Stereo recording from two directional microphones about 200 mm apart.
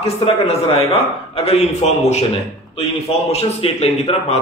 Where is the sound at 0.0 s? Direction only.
30° left (ahead or behind).